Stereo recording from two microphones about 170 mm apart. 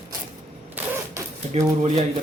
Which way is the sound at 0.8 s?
15° right (ahead or behind).